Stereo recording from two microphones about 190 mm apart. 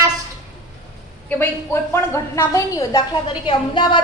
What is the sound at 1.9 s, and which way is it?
A woman's voice, 15° left (ahead or behind).